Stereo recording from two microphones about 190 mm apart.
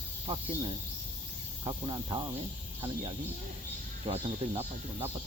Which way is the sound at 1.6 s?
25° right (ahead or behind).